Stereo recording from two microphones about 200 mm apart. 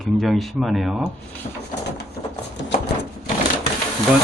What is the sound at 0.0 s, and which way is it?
Speech, centre (ahead or behind).